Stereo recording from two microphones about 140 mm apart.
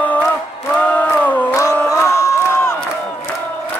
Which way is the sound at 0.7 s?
10° left (ahead or behind).